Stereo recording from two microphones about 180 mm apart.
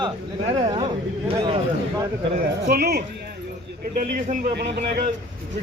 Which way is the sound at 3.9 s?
50° right (ahead or behind).